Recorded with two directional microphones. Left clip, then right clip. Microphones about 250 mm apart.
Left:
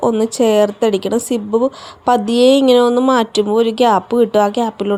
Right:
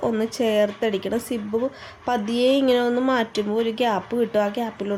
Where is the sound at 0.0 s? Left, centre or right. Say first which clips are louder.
Left 9 dB; left.